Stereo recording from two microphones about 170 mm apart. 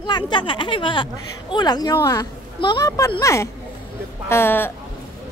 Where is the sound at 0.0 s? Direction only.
25° left (ahead or behind).